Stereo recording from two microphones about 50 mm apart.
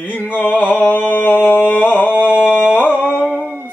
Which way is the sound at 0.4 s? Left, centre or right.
Left.